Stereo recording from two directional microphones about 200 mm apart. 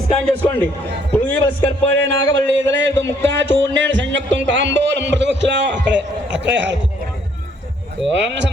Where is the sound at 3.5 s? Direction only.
65° right (ahead or behind).